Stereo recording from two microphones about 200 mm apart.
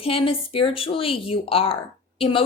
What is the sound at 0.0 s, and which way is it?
A woman's voice, 30° left (ahead or behind).